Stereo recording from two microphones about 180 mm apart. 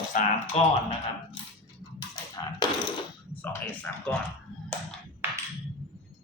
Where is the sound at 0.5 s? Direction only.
35° left (ahead or behind).